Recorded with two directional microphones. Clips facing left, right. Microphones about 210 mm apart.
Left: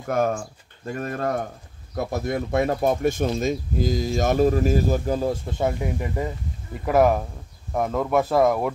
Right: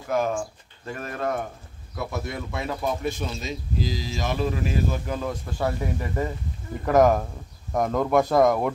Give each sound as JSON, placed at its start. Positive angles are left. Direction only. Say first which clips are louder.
{"t": 0.1, "sound": "speech", "louder": "left 2 dB", "side_deg": 50}
{"t": 0.9, "sound": "speech", "louder": "left 2 dB", "side_deg": 40}